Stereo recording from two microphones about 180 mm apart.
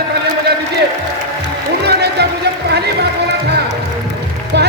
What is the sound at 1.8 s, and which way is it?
Music, 65° right (ahead or behind).